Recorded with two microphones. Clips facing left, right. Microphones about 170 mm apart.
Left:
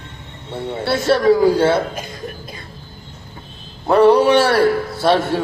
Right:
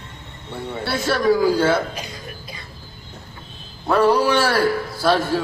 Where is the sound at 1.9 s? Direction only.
50° left (ahead or behind).